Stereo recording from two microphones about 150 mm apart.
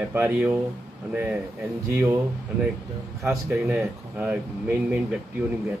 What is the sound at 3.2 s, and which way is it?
Speech, centre (ahead or behind).